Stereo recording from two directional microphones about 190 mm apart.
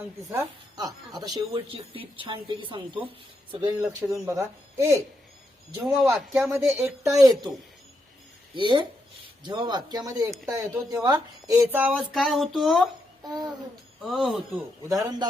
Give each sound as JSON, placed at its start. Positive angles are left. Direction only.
{"t": 0.3, "sound": "a woman's voice", "side_deg": -15}
{"t": 3.8, "sound": "speech", "side_deg": -15}
{"t": 5.8, "sound": "speech", "side_deg": 0}
{"t": 8.5, "sound": "speech", "side_deg": -25}
{"t": 13.2, "sound": "a woman's voice", "side_deg": -20}
{"t": 14.0, "sound": "speech", "side_deg": 0}
{"t": 14.8, "sound": "speech", "side_deg": -20}